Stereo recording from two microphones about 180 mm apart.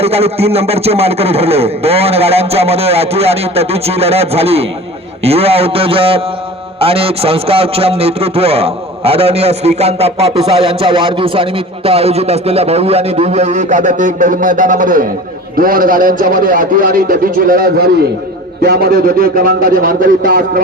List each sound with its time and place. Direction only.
0.0 s a man's voice: 35° right (ahead or behind); by 20.4 s 50° right (ahead or behind)